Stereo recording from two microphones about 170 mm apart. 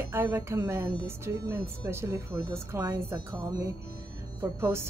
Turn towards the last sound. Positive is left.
turn(degrees=-15)  # may be behind; listen again after turning